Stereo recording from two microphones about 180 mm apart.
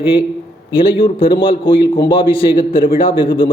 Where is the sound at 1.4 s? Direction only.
25° left (ahead or behind).